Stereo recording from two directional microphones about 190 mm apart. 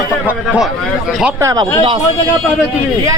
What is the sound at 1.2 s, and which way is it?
Speech, 15° right (ahead or behind).